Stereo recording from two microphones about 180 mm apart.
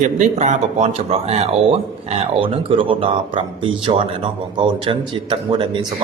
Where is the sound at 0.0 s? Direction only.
40° right (ahead or behind).